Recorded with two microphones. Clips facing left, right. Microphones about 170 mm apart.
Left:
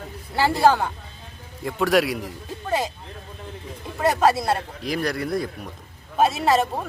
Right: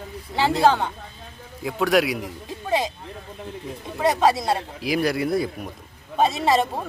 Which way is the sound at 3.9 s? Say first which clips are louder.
Even; centre (ahead or behind).